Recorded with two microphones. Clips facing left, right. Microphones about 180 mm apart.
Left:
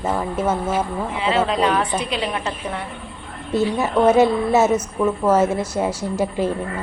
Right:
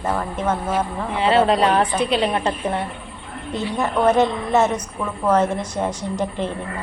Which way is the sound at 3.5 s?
10° left (ahead or behind).